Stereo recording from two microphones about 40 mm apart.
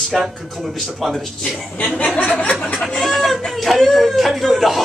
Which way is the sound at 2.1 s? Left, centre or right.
Left.